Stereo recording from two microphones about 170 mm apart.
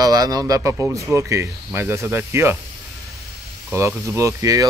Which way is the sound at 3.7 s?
15° right (ahead or behind).